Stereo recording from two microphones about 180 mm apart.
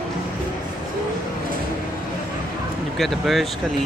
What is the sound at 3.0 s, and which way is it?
Speech, centre (ahead or behind).